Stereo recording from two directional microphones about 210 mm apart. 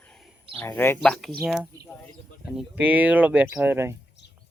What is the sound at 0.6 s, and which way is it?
Speech, 10° left (ahead or behind).